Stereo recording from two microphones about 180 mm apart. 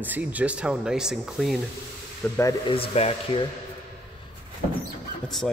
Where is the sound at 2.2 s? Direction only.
10° left (ahead or behind).